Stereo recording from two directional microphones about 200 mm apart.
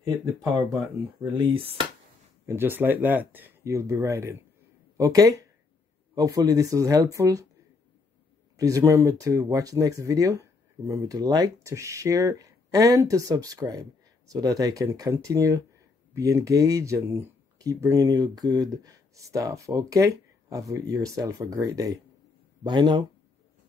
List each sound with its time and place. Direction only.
1.3 s speech: 25° right (ahead or behind)
2.4 s speech: 10° right (ahead or behind)
8.5 s speech: 15° right (ahead or behind)